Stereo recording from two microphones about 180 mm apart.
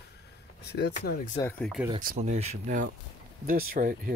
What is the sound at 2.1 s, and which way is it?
Speech, 40° right (ahead or behind).